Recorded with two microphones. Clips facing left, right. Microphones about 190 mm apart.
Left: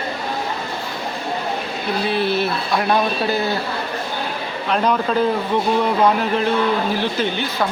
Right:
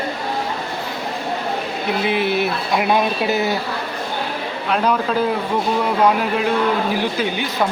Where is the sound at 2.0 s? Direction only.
15° right (ahead or behind).